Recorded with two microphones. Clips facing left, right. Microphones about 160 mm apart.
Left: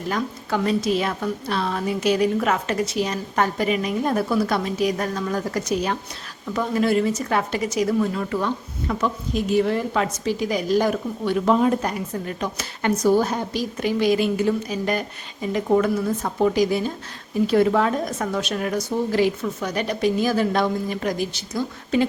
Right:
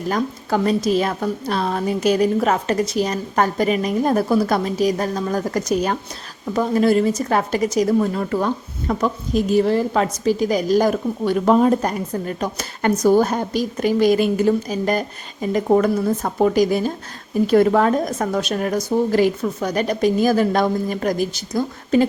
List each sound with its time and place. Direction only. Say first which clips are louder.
0.1 s speech: right 4 dB; 40° right (ahead or behind)